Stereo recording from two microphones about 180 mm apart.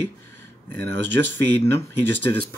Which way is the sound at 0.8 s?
10° left (ahead or behind).